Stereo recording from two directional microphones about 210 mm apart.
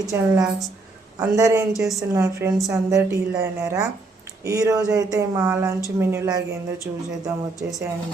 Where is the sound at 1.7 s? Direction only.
Centre (ahead or behind).